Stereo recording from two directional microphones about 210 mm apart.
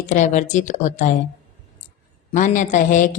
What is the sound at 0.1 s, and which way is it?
Speech, 35° left (ahead or behind).